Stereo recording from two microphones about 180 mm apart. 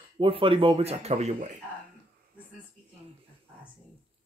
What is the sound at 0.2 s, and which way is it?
Speech, 30° right (ahead or behind).